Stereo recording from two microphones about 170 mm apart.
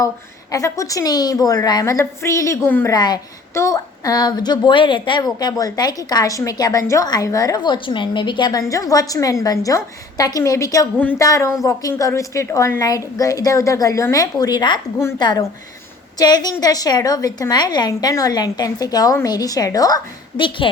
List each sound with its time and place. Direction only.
0.5 s a woman's voice: 20° left (ahead or behind)
2.9 s a woman's voice: 25° left (ahead or behind)